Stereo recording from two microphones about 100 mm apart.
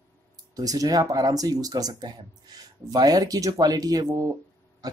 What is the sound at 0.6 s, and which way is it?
Speech, 40° right (ahead or behind).